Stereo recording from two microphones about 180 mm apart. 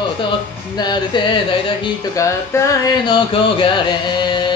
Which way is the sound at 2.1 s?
15° left (ahead or behind).